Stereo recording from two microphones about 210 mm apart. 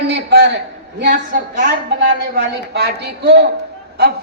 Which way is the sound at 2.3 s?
50° right (ahead or behind).